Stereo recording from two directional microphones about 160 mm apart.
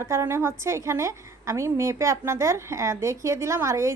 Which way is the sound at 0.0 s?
15° right (ahead or behind).